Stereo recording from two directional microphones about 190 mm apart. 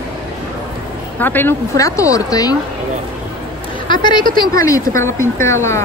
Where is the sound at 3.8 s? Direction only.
25° left (ahead or behind).